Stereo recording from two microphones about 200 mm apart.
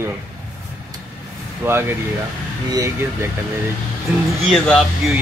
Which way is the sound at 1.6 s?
10° right (ahead or behind).